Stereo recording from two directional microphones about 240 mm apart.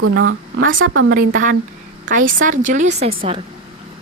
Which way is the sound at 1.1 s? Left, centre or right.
Right.